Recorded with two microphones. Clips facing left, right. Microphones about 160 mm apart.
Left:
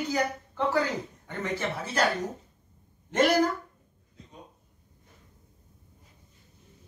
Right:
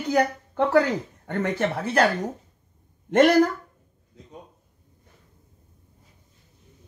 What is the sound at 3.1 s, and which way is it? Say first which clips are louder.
Speech: right 6 dB; 60° right (ahead or behind).